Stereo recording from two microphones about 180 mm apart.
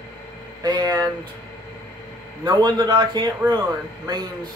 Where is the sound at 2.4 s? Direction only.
20° right (ahead or behind).